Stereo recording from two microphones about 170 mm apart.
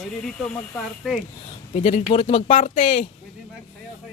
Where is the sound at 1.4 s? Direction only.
40° left (ahead or behind).